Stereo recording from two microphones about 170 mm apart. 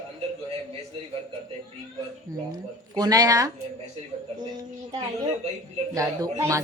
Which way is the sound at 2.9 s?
20° right (ahead or behind).